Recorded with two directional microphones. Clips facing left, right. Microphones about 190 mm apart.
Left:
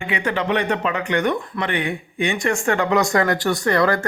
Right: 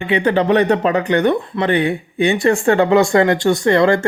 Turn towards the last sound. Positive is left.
turn(degrees=-25)  # may be behind; listen again after turning